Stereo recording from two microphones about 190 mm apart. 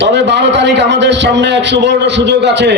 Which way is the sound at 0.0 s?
65° right (ahead or behind).